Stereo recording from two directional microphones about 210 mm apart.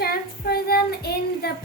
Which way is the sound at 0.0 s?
50° left (ahead or behind).